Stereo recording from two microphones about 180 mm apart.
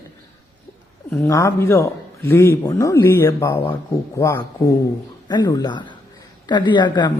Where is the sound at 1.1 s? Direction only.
15° left (ahead or behind).